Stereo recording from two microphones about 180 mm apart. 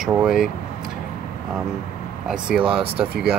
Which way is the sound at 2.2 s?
5° right (ahead or behind).